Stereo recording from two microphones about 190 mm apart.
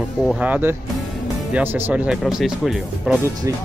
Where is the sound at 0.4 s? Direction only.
10° right (ahead or behind).